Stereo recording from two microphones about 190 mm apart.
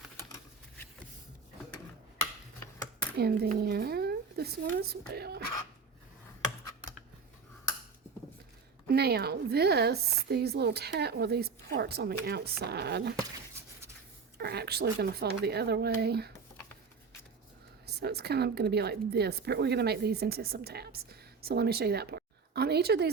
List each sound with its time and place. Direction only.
3.2 s speech: 55° right (ahead or behind)
8.9 s a woman's voice: 55° right (ahead or behind)
14.3 s a woman's voice: 60° right (ahead or behind)
17.8 s a woman's voice: 60° right (ahead or behind)